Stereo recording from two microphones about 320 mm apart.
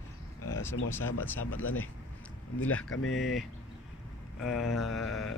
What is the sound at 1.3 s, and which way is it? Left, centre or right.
Speech, left.